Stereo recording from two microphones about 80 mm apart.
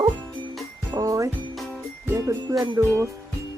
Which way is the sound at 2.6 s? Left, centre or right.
Right.